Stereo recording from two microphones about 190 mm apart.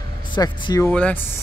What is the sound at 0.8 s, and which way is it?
Speech, 5° left (ahead or behind).